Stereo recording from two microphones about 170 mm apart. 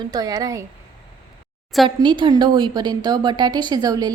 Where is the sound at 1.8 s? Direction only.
30° right (ahead or behind).